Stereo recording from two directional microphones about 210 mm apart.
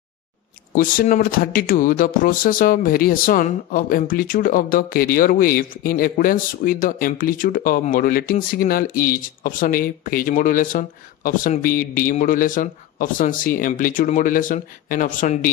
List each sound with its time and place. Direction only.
0.7 s speech: 40° left (ahead or behind)